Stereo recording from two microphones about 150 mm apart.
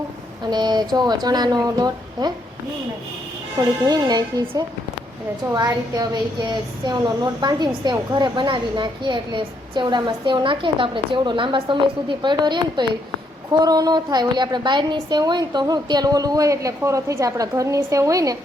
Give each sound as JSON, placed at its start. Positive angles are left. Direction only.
{"t": 0.4, "sound": "a woman's voice", "side_deg": -30}
{"t": 3.6, "sound": "a woman's voice", "side_deg": -25}